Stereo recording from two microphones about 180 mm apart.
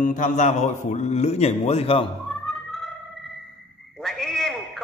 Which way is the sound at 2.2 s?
Centre (ahead or behind).